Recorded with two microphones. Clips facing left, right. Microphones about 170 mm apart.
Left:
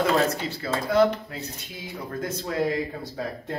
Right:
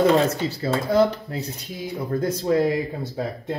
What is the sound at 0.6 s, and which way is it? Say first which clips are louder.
Speech: right 2 dB; 35° right (ahead or behind).